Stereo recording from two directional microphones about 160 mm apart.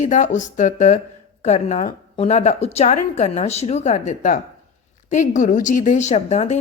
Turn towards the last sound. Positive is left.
turn(degrees=45)  # may be behind; listen again after turning